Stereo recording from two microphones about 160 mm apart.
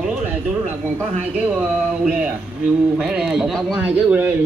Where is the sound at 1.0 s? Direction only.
10° right (ahead or behind).